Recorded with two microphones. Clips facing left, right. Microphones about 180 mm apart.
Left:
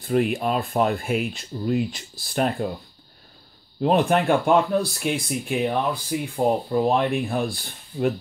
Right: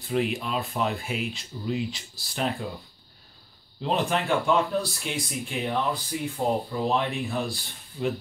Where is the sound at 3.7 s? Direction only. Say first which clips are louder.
Left 7 dB; 55° left (ahead or behind).